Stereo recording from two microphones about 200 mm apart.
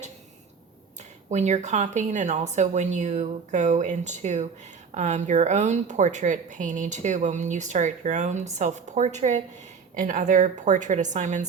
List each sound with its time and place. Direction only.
1.3 s a woman's voice: 35° right (ahead or behind)